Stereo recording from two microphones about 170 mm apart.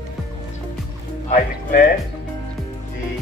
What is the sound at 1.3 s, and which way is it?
Speech, 50° left (ahead or behind).